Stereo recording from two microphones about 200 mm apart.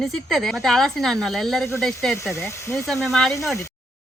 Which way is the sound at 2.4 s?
15° left (ahead or behind).